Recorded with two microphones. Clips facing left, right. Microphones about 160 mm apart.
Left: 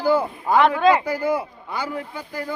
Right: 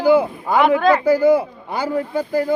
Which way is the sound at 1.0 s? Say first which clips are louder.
Right 9 dB; 30° right (ahead or behind).